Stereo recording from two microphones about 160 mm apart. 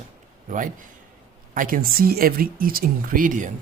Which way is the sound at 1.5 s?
60° right (ahead or behind).